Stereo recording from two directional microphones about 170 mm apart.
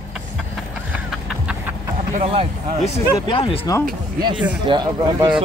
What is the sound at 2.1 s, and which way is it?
Speech, 35° right (ahead or behind).